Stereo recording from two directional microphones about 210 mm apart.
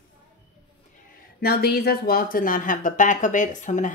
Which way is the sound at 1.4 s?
50° left (ahead or behind).